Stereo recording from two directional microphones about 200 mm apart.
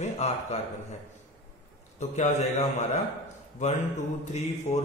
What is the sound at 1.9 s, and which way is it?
Speech, 35° left (ahead or behind).